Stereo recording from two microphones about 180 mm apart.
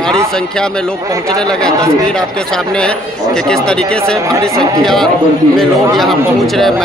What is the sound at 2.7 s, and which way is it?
A man's voice, 5° left (ahead or behind).